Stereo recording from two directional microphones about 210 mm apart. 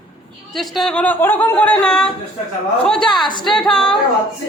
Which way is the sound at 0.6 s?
Centre (ahead or behind).